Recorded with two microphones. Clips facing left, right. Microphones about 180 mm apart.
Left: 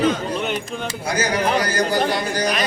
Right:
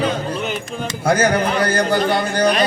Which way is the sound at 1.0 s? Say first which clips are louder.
Right 5 dB; 55° right (ahead or behind).